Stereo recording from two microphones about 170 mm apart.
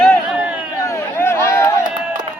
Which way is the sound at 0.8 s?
15° left (ahead or behind).